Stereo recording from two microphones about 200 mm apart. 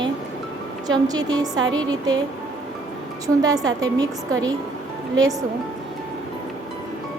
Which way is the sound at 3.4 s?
15° right (ahead or behind).